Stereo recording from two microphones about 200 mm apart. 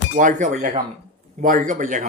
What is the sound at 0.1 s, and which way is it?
Speech, 40° right (ahead or behind).